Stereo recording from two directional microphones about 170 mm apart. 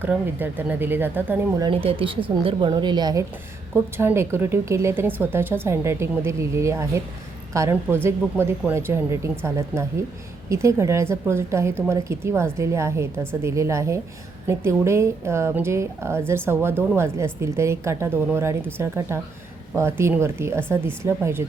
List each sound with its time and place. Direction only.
0.0 s a woman's voice: 10° right (ahead or behind)
1.6 s a woman's voice: 30° right (ahead or behind); by 21.4 s 15° right (ahead or behind)